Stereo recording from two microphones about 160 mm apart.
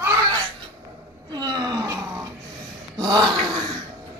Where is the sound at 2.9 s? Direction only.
25° right (ahead or behind).